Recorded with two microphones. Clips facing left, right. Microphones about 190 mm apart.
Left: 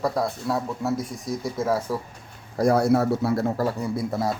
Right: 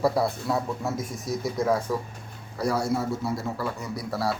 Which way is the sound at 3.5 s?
40° left (ahead or behind).